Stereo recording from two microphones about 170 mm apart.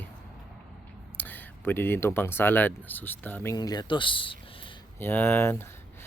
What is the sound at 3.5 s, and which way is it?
Speech, 25° left (ahead or behind).